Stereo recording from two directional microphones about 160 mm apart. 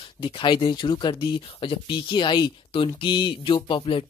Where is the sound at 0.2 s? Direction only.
30° left (ahead or behind).